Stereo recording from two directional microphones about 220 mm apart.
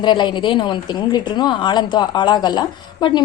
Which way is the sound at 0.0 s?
20° left (ahead or behind).